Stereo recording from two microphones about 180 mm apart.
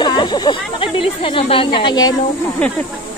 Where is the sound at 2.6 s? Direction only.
5° left (ahead or behind).